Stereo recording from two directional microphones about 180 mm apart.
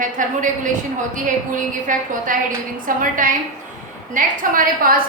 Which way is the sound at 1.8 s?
50° right (ahead or behind).